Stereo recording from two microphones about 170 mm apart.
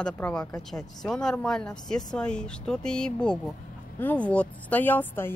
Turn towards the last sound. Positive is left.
turn(degrees=10)  # may be behind; listen again after turning